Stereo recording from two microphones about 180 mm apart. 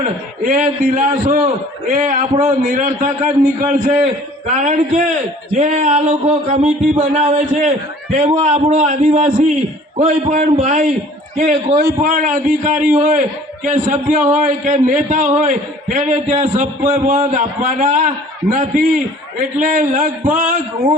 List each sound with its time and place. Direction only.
0.4 s a man's voice: 45° right (ahead or behind)